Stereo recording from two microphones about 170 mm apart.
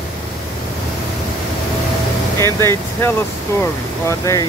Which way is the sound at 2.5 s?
15° left (ahead or behind).